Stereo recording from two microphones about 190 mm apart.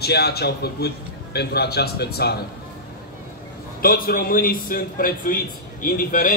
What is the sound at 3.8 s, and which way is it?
A man's voice, 50° left (ahead or behind).